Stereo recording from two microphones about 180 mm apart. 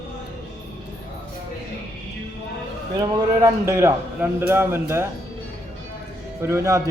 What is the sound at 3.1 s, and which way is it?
A man's voice, 15° right (ahead or behind).